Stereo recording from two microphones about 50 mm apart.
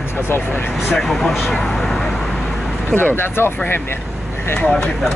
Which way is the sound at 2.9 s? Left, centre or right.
Left.